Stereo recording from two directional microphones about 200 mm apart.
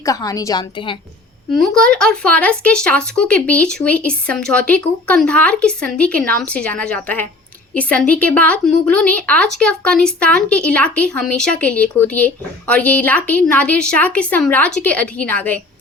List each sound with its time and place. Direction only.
0.0 s speech: 15° left (ahead or behind)
1.5 s speech: centre (ahead or behind)